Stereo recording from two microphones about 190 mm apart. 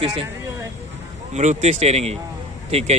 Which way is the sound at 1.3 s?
35° right (ahead or behind).